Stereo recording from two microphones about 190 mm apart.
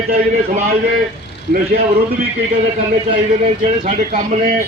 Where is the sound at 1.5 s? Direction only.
50° right (ahead or behind).